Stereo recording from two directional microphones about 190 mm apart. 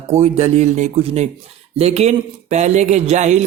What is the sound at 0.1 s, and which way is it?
A man's voice, 35° right (ahead or behind).